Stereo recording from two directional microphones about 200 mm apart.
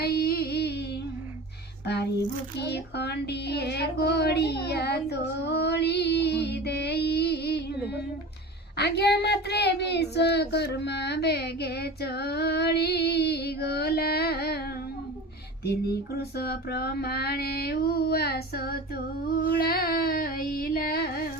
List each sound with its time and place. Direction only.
0.0 s music: 50° left (ahead or behind)
2.6 s child singing: 55° left (ahead or behind)
8.8 s speech: 55° left (ahead or behind)
15.6 s female singing: 50° left (ahead or behind)